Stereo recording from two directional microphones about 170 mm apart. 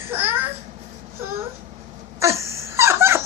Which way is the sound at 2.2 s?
15° right (ahead or behind).